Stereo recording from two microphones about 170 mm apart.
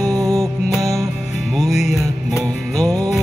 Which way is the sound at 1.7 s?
40° left (ahead or behind).